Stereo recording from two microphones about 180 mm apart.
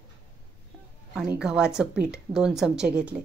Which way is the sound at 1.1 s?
5° right (ahead or behind).